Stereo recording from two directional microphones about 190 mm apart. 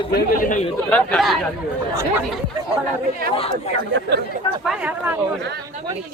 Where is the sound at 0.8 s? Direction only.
5° left (ahead or behind).